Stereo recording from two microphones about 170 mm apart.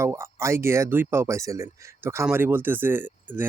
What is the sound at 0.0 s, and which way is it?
Speech, 15° right (ahead or behind).